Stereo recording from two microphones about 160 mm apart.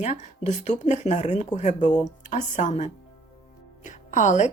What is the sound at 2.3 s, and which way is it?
A woman's voice, 50° left (ahead or behind).